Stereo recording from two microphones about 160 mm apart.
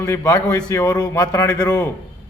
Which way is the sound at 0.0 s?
20° left (ahead or behind).